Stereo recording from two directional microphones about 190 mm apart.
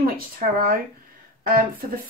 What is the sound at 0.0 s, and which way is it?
A woman's voice, 50° right (ahead or behind).